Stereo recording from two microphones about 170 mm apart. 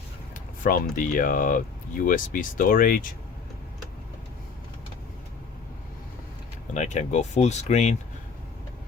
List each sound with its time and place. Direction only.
0.6 s speech: 55° left (ahead or behind)
6.7 s speech: 45° left (ahead or behind)